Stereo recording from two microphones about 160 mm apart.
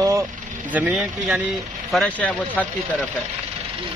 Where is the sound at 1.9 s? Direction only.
5° left (ahead or behind).